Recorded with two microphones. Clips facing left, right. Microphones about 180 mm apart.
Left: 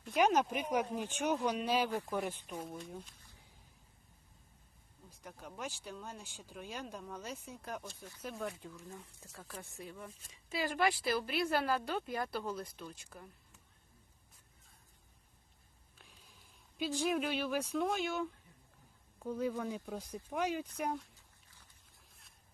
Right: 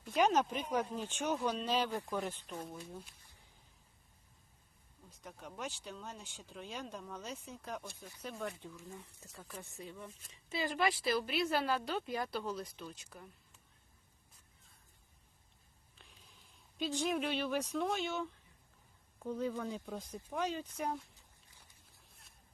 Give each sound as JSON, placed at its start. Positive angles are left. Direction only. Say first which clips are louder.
{"t": 0.0, "sound": "speech", "louder": "left 1 dB", "side_deg": 5}
{"t": 2.6, "sound": "speech", "louder": "left 2 dB", "side_deg": -5}
{"t": 5.2, "sound": "speech", "louder": "even", "side_deg": 5}
{"t": 7.9, "sound": "speech", "louder": "left 1 dB", "side_deg": -15}
{"t": 8.2, "sound": "speech", "louder": "left 1 dB", "side_deg": 0}
{"t": 9.8, "sound": "speech", "louder": "even", "side_deg": 5}
{"t": 16.0, "sound": "speech", "louder": "left 1 dB", "side_deg": 0}